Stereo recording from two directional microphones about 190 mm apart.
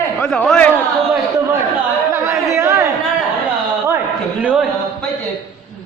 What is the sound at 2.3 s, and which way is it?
Chatter, 15° right (ahead or behind).